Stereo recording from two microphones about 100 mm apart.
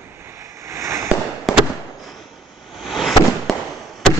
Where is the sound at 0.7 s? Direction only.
30° right (ahead or behind).